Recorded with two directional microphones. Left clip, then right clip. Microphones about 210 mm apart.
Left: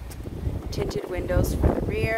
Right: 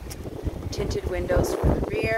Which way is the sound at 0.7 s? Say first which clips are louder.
Even; 20° left (ahead or behind).